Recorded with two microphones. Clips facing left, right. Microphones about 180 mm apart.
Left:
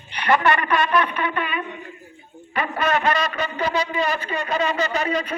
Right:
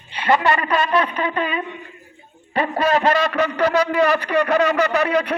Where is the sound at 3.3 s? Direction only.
70° right (ahead or behind).